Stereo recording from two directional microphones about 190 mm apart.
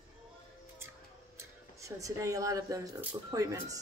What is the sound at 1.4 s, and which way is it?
Speech, 15° right (ahead or behind).